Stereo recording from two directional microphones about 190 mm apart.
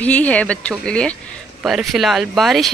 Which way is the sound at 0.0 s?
5° left (ahead or behind).